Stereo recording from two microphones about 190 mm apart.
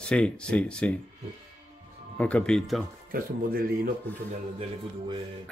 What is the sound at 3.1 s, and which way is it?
Speech, 50° right (ahead or behind).